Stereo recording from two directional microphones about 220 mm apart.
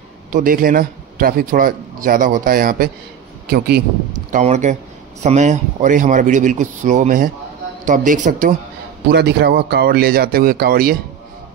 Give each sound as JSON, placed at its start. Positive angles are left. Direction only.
{"t": 0.3, "sound": "a man's voice", "side_deg": -40}
{"t": 4.3, "sound": "a man's voice", "side_deg": -35}
{"t": 9.1, "sound": "speech", "side_deg": -50}